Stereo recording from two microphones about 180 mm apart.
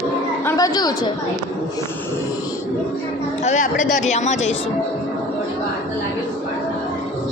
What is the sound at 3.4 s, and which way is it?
A woman's voice, 40° left (ahead or behind).